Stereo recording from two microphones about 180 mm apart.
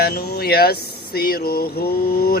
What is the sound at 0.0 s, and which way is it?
Speech, 60° left (ahead or behind).